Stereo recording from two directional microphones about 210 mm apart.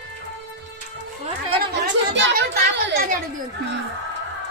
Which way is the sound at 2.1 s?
60° right (ahead or behind).